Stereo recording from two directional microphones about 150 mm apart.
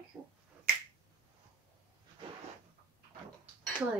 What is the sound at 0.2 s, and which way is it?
Finger snapping, 15° right (ahead or behind).